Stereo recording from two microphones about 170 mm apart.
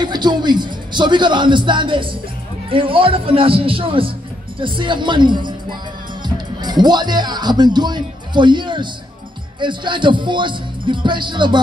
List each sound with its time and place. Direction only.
0.0 s speech: 25° right (ahead or behind)